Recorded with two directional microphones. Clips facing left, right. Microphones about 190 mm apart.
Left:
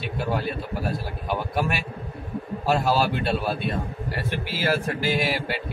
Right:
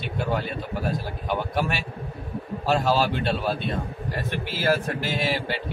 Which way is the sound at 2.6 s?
5° left (ahead or behind).